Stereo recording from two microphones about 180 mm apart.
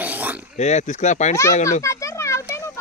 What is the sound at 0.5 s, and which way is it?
Speech, 40° left (ahead or behind).